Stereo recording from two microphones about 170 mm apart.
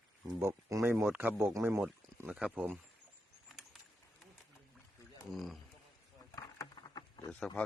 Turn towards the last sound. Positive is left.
turn(degrees=5)  # may be behind; listen again after turning